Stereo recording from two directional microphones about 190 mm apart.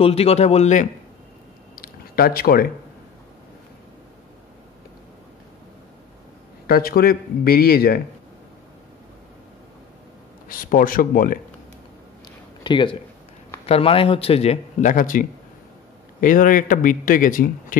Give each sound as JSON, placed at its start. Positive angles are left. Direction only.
{"t": 0.0, "sound": "speech", "side_deg": 30}
{"t": 1.8, "sound": "a sound", "side_deg": 50}
{"t": 6.7, "sound": "speech", "side_deg": 50}
{"t": 10.5, "sound": "speech", "side_deg": 45}
{"t": 12.6, "sound": "speech", "side_deg": 25}